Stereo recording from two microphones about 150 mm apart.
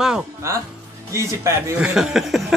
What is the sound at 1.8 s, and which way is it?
Speech, 5° right (ahead or behind).